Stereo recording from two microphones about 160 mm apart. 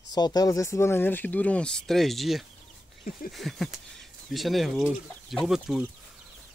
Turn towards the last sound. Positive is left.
turn(degrees=0)  # may be behind; listen again after turning